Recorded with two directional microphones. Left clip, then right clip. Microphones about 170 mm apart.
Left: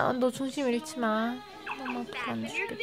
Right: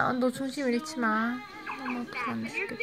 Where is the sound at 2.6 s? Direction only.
Centre (ahead or behind).